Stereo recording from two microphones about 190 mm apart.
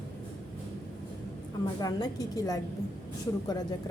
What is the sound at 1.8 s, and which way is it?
Speech, 20° left (ahead or behind).